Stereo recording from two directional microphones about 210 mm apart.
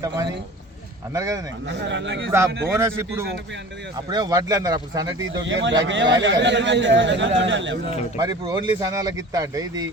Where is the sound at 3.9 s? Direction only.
20° right (ahead or behind).